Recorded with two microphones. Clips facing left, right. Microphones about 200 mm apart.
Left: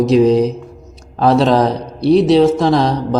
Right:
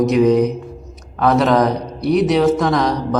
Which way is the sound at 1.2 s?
30° left (ahead or behind).